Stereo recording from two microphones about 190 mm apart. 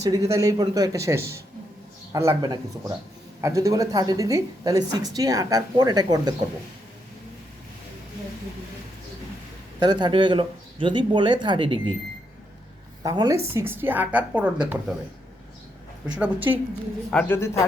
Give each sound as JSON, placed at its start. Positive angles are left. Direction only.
{"t": 0.0, "sound": "a woman's voice", "side_deg": -20}
{"t": 9.8, "sound": "speech", "side_deg": -25}
{"t": 13.0, "sound": "a woman's voice", "side_deg": -20}
{"t": 16.0, "sound": "a woman's voice", "side_deg": -5}
{"t": 17.1, "sound": "speech", "side_deg": 5}